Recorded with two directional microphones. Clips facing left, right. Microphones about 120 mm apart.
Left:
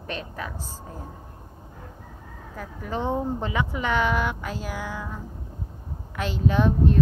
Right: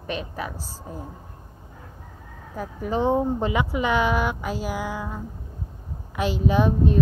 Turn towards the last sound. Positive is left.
turn(degrees=-15)  # may be behind; listen again after turning